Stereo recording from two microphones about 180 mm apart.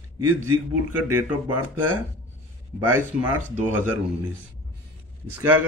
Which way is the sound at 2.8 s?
10° right (ahead or behind).